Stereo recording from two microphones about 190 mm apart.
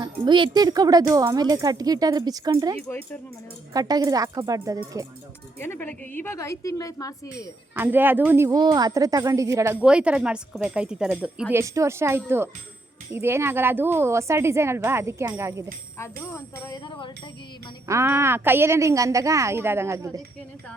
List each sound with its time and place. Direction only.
0.0 s a woman's voice: 25° right (ahead or behind)
5.5 s a woman's voice: 10° left (ahead or behind)
7.8 s a woman's voice: 10° right (ahead or behind)
9.8 s a woman's voice: 5° right (ahead or behind)
16.0 s a woman's voice: 15° left (ahead or behind)
17.8 s a woman's voice: 15° right (ahead or behind)